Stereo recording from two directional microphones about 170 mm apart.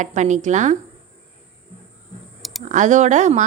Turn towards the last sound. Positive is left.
turn(degrees=-45)  # may be behind; listen again after turning